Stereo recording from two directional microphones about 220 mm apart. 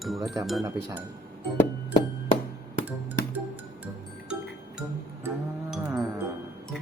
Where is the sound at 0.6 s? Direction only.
15° right (ahead or behind).